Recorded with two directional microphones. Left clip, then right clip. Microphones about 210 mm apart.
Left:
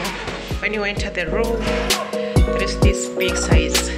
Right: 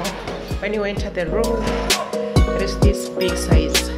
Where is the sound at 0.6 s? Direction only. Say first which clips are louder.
Left 1 dB; 5° right (ahead or behind).